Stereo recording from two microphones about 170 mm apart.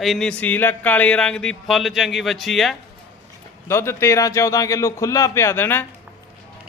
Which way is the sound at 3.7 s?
15° left (ahead or behind).